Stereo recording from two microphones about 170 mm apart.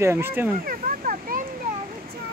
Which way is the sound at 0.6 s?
55° right (ahead or behind).